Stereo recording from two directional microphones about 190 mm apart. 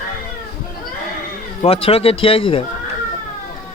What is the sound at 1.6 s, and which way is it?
Speech, 30° left (ahead or behind).